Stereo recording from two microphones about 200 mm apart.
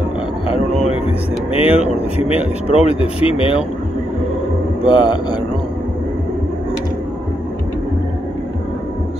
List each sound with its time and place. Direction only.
1.5 s speech: 30° left (ahead or behind)
4.8 s speech: 25° left (ahead or behind)